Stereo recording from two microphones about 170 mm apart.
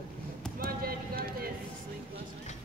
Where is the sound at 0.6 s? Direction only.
60° right (ahead or behind).